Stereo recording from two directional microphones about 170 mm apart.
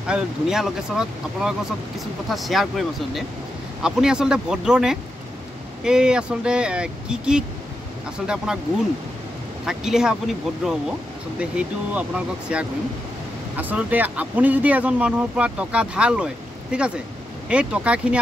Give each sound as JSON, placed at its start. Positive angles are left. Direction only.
{"t": 0.0, "sound": "speech", "side_deg": -5}
{"t": 3.8, "sound": "speech", "side_deg": -5}
{"t": 8.5, "sound": "speech", "side_deg": -5}
{"t": 9.7, "sound": "speech", "side_deg": -5}